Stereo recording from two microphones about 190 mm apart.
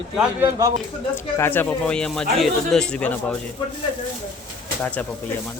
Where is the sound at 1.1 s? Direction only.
10° left (ahead or behind).